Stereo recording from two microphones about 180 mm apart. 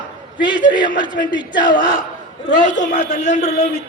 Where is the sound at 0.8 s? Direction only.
80° left.